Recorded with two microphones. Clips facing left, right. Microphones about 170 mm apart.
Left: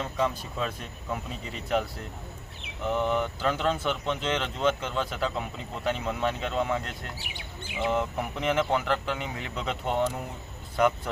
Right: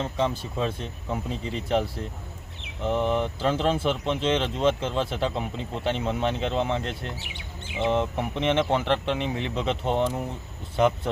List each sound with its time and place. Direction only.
0.0 s speech: 25° right (ahead or behind)